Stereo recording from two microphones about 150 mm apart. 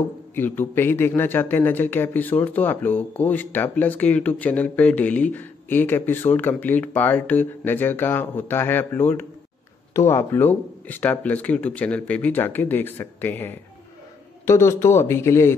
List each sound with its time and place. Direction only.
0.4 s a man's voice: 15° left (ahead or behind)